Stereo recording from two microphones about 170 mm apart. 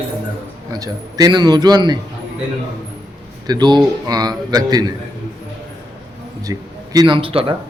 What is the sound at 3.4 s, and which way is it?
A man's voice, 25° right (ahead or behind).